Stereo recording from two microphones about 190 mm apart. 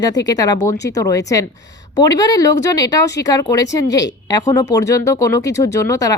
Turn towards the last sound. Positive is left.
turn(degrees=15)  # may be behind; listen again after turning